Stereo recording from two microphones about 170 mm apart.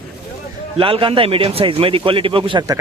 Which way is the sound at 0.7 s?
30° right (ahead or behind).